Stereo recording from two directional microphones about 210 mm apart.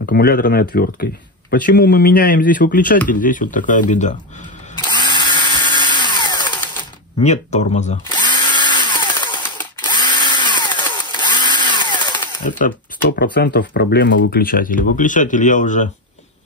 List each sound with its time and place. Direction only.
0.0 s speech: 50° left (ahead or behind)
4.7 s drill: 20° left (ahead or behind)
6.8 s speech: 30° left (ahead or behind)
8.1 s drill: 20° left (ahead or behind)
9.8 s tools: 20° left (ahead or behind)
12.4 s speech: 40° left (ahead or behind)